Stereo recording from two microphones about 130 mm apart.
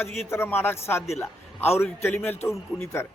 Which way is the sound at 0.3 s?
20° left (ahead or behind).